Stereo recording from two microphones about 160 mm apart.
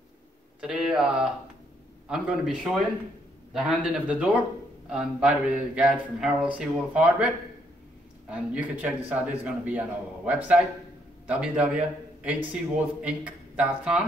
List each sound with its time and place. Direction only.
0.6 s a man's voice: 5° right (ahead or behind)